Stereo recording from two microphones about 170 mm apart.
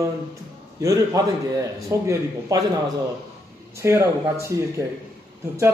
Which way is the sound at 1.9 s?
15° right (ahead or behind).